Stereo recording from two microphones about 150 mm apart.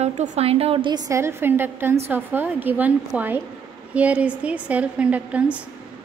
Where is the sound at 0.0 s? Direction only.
50° right (ahead or behind).